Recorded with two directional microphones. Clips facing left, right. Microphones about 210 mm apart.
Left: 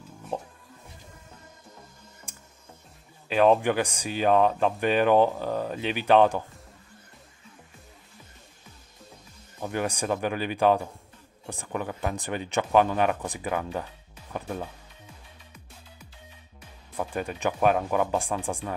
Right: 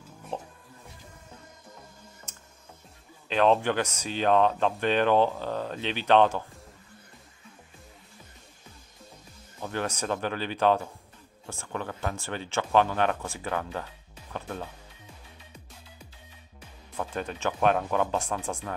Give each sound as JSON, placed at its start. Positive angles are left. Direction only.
{"t": 3.3, "sound": "speech", "side_deg": 10}
{"t": 9.6, "sound": "speech", "side_deg": 10}
{"t": 16.9, "sound": "speech", "side_deg": 10}